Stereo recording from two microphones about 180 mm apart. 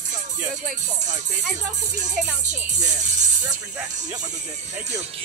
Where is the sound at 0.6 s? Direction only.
40° right (ahead or behind).